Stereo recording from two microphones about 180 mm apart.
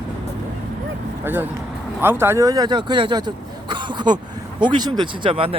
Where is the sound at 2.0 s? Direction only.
15° right (ahead or behind).